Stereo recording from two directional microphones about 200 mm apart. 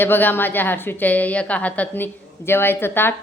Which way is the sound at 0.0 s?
10° left (ahead or behind).